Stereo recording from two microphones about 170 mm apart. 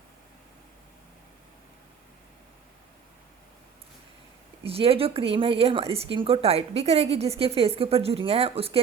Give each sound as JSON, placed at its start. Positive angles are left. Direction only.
{"t": 4.6, "sound": "speech", "side_deg": -35}